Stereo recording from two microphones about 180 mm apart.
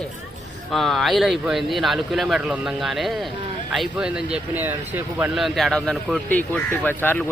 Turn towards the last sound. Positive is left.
turn(degrees=10)  # may be behind; listen again after turning